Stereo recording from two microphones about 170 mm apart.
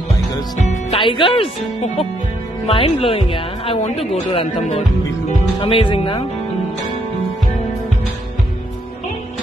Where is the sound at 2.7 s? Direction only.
35° left (ahead or behind).